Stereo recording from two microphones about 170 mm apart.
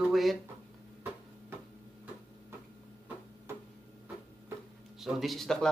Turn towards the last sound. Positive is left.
turn(degrees=0)  # may be behind; listen again after turning